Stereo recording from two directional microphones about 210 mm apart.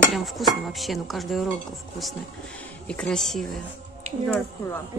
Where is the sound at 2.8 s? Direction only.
5° left (ahead or behind).